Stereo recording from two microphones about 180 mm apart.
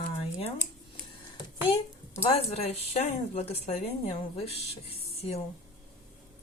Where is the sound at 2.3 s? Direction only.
35° left (ahead or behind).